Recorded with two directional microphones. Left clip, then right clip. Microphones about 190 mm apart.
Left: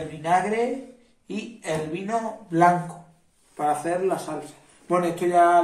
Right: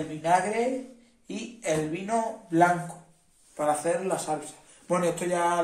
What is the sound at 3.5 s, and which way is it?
A man's voice, 65° right (ahead or behind).